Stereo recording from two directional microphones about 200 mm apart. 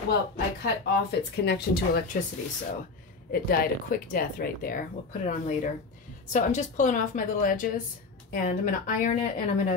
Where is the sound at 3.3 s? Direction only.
45° left (ahead or behind).